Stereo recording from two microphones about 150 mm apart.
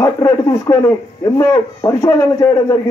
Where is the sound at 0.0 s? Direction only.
20° left (ahead or behind).